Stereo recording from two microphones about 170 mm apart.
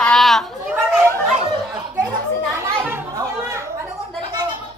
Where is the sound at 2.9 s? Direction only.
15° right (ahead or behind).